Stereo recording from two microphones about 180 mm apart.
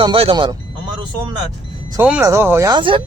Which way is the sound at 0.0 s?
30° right (ahead or behind).